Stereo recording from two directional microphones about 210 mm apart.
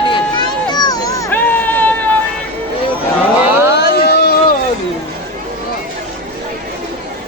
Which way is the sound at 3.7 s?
50° left (ahead or behind).